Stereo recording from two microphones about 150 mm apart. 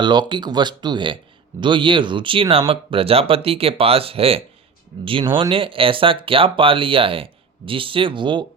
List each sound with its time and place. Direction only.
0.0 s speech: 30° right (ahead or behind)